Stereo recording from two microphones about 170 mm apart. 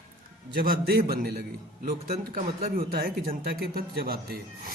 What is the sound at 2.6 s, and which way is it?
Speech, 60° right (ahead or behind).